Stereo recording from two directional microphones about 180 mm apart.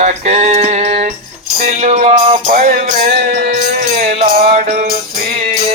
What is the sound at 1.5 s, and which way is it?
Music, 35° right (ahead or behind).